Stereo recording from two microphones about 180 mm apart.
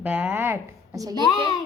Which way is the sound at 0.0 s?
10° right (ahead or behind).